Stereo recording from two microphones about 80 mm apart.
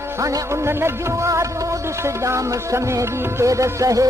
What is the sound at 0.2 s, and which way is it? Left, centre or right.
Music, right.